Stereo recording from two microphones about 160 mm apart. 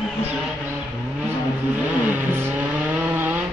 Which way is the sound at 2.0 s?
10° right (ahead or behind).